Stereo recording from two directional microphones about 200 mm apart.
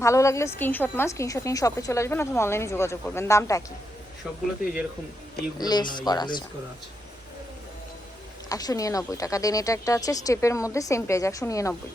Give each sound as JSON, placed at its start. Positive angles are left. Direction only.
{"t": 0.0, "sound": "a woman's voice", "side_deg": 15}
{"t": 5.5, "sound": "speech", "side_deg": 20}
{"t": 8.4, "sound": "a woman's voice", "side_deg": 20}